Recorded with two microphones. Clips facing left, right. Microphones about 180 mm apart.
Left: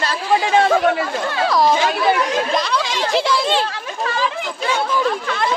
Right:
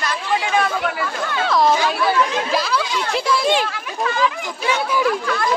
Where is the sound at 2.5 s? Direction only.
5° right (ahead or behind).